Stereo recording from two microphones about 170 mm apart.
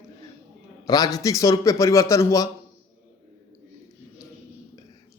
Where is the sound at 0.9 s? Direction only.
20° left (ahead or behind).